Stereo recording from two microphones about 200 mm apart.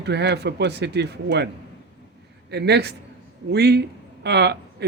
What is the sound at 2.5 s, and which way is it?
Speech, 55° right (ahead or behind).